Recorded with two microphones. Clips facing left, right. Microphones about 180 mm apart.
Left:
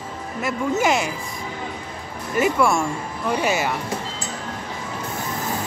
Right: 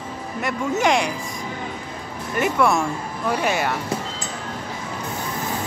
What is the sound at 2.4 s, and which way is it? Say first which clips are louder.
Speech: left 1 dB; centre (ahead or behind).